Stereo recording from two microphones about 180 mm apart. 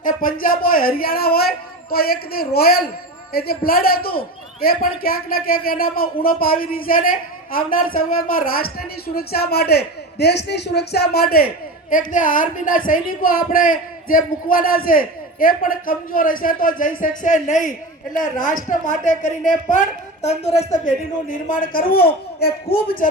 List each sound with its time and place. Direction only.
0.0 s a man's voice: 50° left (ahead or behind)
20.2 s speech: 35° left (ahead or behind); by 23.0 s 60° left (ahead or behind)